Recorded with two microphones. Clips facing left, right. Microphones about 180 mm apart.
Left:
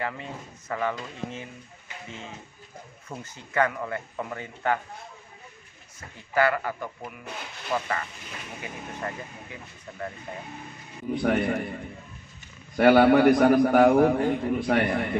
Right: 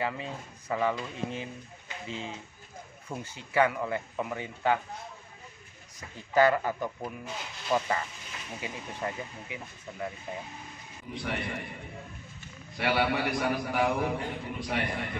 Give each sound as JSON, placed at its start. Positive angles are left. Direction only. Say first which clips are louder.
{"t": 0.7, "sound": "speech", "louder": "even", "side_deg": -10}
{"t": 5.9, "sound": "speech", "louder": "right 1 dB", "side_deg": -20}
{"t": 9.0, "sound": "speech", "louder": "right 2 dB", "side_deg": -10}
{"t": 11.1, "sound": "a man's voice", "louder": "left 11 dB", "side_deg": 50}
{"t": 12.7, "sound": "a man's voice", "louder": "left 11 dB", "side_deg": 50}